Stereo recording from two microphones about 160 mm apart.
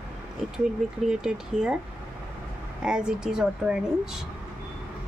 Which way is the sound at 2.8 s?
5° right (ahead or behind).